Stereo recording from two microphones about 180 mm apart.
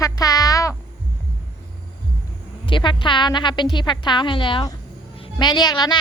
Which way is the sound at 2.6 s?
25° left (ahead or behind).